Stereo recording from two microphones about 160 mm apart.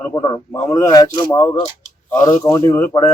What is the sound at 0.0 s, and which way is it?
Speech, 20° left (ahead or behind).